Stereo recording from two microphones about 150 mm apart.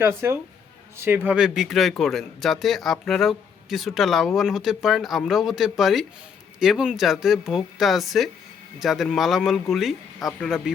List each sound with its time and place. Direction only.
0.0 s speech: 15° right (ahead or behind); by 10.7 s centre (ahead or behind)